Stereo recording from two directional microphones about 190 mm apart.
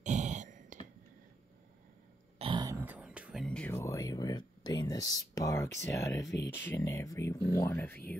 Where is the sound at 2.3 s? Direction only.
25° right (ahead or behind); by 3.4 s 5° right (ahead or behind).